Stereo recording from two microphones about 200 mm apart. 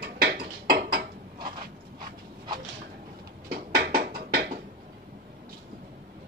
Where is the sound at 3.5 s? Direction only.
50° right (ahead or behind).